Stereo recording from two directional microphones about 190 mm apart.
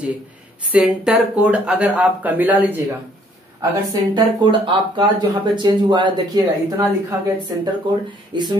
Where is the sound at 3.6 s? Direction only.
20° right (ahead or behind).